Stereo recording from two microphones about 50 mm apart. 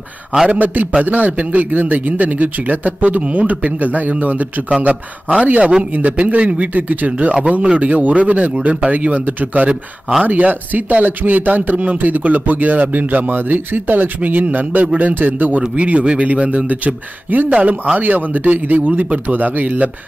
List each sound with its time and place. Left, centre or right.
0.5 s speech: right
5.5 s a man's voice: right
5.9 s a man's voice: right
17.5 s a man's voice: right
17.9 s speech: right